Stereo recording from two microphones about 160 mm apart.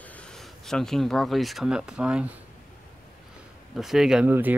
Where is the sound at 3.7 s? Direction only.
Centre (ahead or behind).